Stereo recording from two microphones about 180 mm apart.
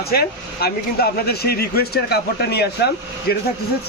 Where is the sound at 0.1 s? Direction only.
60° left (ahead or behind).